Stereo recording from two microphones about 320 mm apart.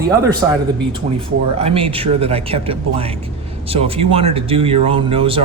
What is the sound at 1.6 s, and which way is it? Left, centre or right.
Speech, centre.